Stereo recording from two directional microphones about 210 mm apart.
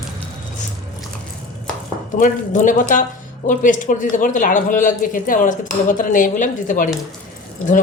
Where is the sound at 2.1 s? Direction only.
40° left (ahead or behind).